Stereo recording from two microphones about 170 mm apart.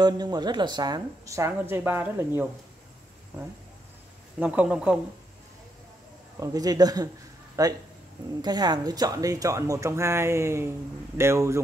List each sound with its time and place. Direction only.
0.0 s speech: 25° right (ahead or behind)
4.4 s speech: 10° right (ahead or behind)
6.4 s speech: 20° right (ahead or behind)